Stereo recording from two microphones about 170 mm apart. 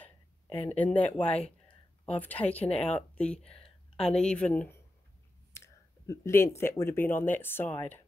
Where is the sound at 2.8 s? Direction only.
5° left (ahead or behind).